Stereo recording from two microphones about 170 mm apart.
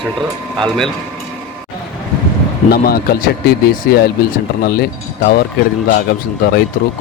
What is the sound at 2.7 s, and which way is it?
Speech, 65° left (ahead or behind).